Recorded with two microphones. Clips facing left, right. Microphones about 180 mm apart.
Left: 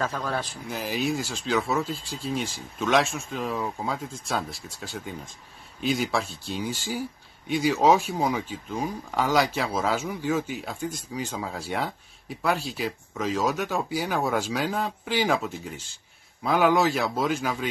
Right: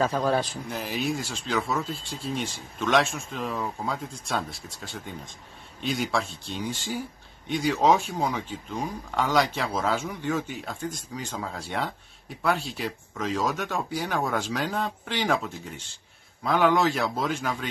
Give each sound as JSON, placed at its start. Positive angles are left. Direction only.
{"t": 0.0, "sound": "speech", "side_deg": -25}
{"t": 0.7, "sound": "speech", "side_deg": 0}